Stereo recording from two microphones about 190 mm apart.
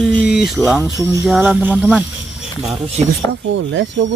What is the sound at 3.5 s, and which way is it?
Speech, 75° right (ahead or behind).